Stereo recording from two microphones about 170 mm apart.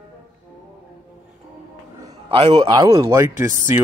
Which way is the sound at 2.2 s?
35° right (ahead or behind).